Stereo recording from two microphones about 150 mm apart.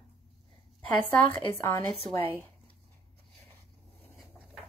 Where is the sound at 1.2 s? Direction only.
15° left (ahead or behind).